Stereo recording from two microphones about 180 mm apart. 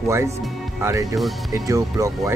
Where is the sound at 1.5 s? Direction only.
20° right (ahead or behind).